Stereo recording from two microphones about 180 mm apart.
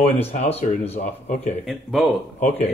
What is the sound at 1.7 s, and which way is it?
Speech, centre (ahead or behind).